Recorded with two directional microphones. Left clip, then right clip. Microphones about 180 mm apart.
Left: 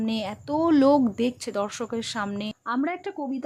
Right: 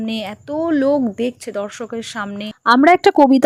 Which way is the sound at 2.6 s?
60° right (ahead or behind).